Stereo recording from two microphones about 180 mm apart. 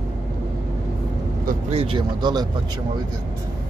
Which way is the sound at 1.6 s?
30° right (ahead or behind).